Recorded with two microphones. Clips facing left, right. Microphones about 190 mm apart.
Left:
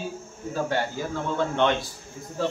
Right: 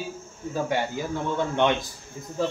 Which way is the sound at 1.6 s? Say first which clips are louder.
Right 1 dB; 15° right (ahead or behind).